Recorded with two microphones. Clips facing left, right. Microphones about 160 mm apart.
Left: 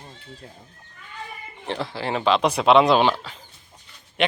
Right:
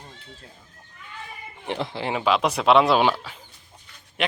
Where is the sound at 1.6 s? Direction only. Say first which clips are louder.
Even; 20° right (ahead or behind).